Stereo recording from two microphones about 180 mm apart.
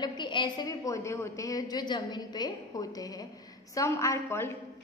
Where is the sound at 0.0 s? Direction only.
25° left (ahead or behind).